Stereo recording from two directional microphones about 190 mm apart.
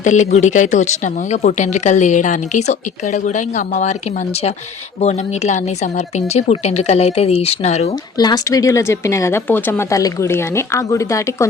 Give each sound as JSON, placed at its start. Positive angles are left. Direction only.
{"t": 0.0, "sound": "speech", "side_deg": 40}
{"t": 4.9, "sound": "speech", "side_deg": 35}
{"t": 8.2, "sound": "speech", "side_deg": 20}